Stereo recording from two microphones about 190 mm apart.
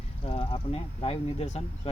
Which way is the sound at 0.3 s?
25° left (ahead or behind).